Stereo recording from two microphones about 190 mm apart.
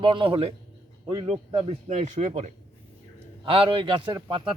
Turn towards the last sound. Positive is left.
turn(degrees=-25)  # may be behind; listen again after turning